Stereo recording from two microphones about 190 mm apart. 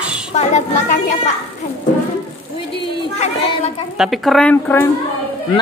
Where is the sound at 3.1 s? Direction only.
35° left (ahead or behind).